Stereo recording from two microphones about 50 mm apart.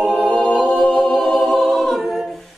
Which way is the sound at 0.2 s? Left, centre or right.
Centre.